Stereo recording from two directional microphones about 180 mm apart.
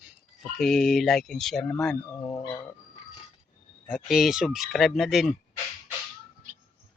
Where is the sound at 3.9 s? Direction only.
Centre (ahead or behind).